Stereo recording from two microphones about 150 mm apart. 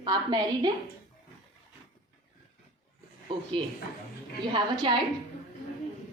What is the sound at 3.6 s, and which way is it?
A woman's voice, 30° right (ahead or behind).